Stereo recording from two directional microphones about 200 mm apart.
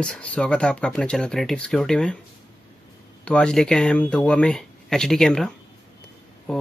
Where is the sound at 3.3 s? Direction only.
5° left (ahead or behind).